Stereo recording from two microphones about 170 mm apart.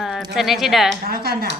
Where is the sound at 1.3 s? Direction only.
65° right (ahead or behind).